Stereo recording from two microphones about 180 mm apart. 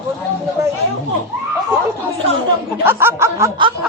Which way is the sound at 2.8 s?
10° right (ahead or behind).